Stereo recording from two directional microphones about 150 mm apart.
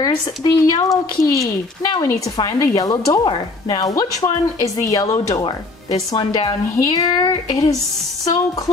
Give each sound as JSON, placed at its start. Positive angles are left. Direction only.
{"t": 0.0, "sound": "speech", "side_deg": 20}